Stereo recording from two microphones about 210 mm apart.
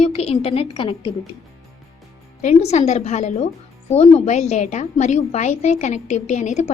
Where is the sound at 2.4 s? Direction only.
30° left (ahead or behind).